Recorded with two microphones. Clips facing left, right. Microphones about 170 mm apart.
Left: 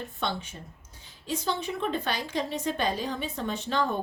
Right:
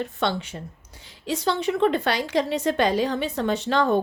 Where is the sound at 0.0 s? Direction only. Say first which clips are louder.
Right 7 dB; 80° right.